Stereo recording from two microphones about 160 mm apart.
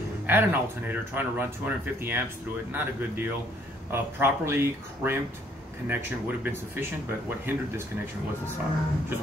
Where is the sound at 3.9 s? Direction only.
15° right (ahead or behind).